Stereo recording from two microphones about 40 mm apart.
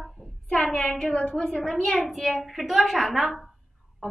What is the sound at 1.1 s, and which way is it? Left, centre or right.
Speech, left.